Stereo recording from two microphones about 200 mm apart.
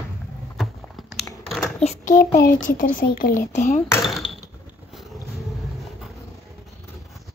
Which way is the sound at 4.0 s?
Centre (ahead or behind).